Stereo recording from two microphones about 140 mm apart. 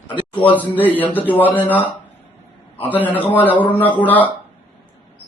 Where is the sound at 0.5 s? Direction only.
10° left (ahead or behind).